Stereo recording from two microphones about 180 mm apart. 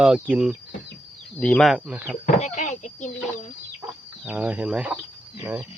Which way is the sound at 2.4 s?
40° left (ahead or behind).